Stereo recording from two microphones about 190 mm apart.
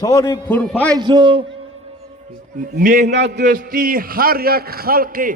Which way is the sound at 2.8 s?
45° right (ahead or behind).